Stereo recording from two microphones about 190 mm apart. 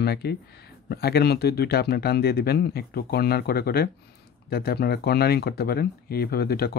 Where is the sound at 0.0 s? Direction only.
55° left (ahead or behind).